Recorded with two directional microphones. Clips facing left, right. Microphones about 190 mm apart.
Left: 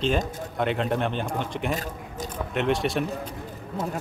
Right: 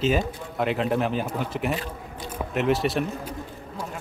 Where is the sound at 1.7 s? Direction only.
45° left (ahead or behind).